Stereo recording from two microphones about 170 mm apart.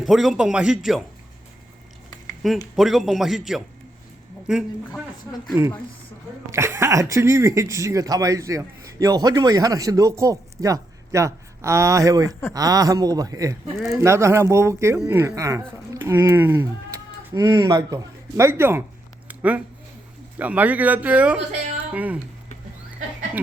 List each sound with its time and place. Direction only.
0.0 s a man's voice: centre (ahead or behind)
2.7 s a man's voice: centre (ahead or behind)
6.5 s speech: 15° right (ahead or behind)
13.7 s a man's voice: centre (ahead or behind)
14.0 s speech: 15° right (ahead or behind)
19.3 s a sound: 10° right (ahead or behind)
20.4 s speech: 10° right (ahead or behind)